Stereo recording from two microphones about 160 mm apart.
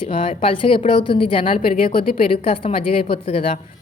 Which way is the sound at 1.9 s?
65° left (ahead or behind).